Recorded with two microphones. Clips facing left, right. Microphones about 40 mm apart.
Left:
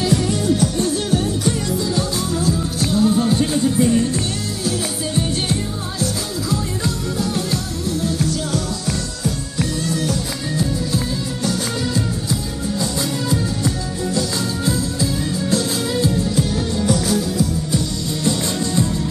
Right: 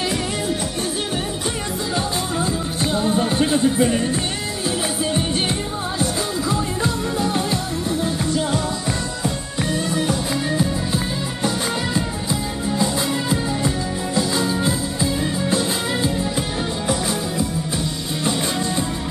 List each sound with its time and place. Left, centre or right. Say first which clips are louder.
2.0 s music: left 1 dB; right
11.4 s music: even; right